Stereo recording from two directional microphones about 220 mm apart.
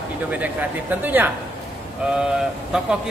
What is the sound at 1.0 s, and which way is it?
Speech, 10° right (ahead or behind).